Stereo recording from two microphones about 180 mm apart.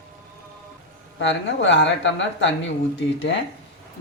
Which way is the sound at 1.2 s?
80° left.